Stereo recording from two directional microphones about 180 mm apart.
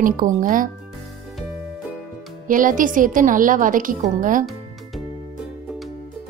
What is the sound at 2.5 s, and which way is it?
Speech, 50° right (ahead or behind).